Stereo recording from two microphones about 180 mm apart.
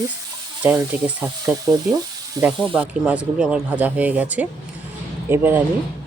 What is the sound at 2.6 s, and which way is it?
Speech, 5° right (ahead or behind).